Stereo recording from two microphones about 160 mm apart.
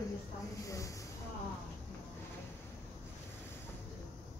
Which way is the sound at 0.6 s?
20° left (ahead or behind).